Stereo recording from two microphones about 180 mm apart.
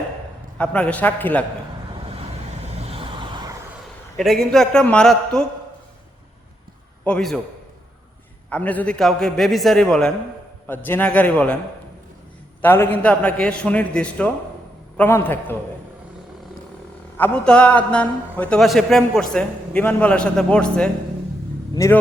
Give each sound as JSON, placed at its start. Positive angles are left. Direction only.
{"t": 0.6, "sound": "a man's voice", "side_deg": 5}
{"t": 2.9, "sound": "vehicle", "side_deg": -30}
{"t": 4.2, "sound": "a man's voice", "side_deg": 0}
{"t": 7.0, "sound": "a man's voice", "side_deg": 5}
{"t": 8.4, "sound": "a man's voice", "side_deg": 10}
{"t": 12.6, "sound": "a man's voice", "side_deg": 10}
{"t": 17.2, "sound": "a man's voice", "side_deg": 10}